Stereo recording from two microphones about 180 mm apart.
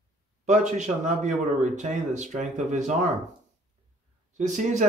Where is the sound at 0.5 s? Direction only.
40° right (ahead or behind).